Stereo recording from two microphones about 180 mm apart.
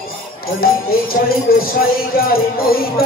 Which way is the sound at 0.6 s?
55° left (ahead or behind).